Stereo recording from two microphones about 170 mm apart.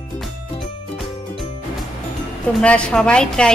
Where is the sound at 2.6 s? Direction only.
5° left (ahead or behind).